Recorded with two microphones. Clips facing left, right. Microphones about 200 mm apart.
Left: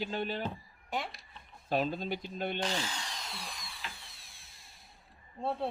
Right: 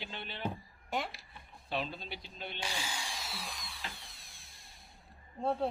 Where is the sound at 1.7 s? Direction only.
45° left (ahead or behind).